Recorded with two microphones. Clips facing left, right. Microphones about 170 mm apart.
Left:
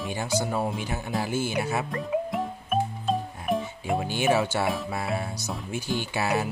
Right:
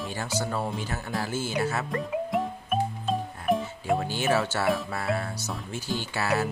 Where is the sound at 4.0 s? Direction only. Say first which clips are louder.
Left 6 dB; 15° left (ahead or behind).